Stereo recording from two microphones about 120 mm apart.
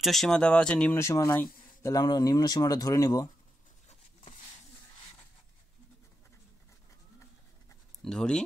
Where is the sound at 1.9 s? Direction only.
35° left (ahead or behind).